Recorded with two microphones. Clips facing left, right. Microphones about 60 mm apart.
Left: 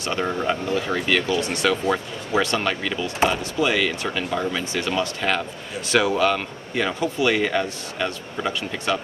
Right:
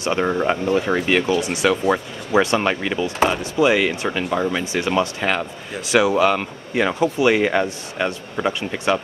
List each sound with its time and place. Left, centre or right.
0.0 s speech: right
1.4 s speech: centre